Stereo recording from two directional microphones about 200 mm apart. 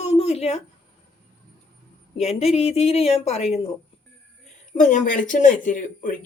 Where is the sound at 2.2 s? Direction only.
30° left (ahead or behind).